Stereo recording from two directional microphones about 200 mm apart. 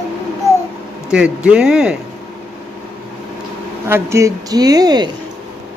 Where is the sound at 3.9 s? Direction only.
10° right (ahead or behind).